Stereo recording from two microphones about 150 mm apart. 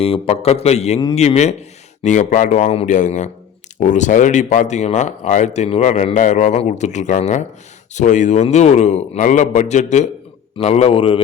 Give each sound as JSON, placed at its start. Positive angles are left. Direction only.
{"t": 0.0, "sound": "a man's voice", "side_deg": 40}